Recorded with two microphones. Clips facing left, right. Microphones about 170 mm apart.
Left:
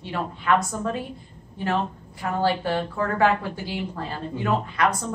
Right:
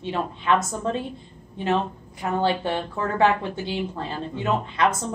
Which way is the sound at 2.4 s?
25° right (ahead or behind).